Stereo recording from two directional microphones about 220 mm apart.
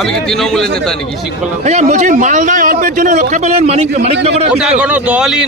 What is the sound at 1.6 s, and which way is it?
A man's voice, 30° right (ahead or behind).